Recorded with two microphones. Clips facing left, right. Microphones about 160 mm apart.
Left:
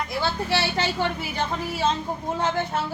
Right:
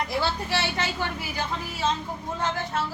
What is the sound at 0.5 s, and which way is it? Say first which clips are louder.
Speech: left 3 dB; 30° left (ahead or behind).